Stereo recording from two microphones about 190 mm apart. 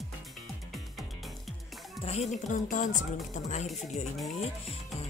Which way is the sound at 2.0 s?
35° left (ahead or behind).